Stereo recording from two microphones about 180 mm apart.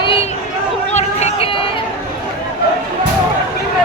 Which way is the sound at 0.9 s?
40° left (ahead or behind).